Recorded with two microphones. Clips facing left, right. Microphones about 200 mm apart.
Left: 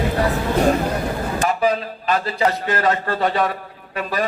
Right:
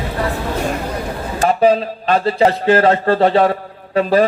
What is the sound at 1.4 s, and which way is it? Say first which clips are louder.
A man's voice: right 8 dB; 30° right (ahead or behind).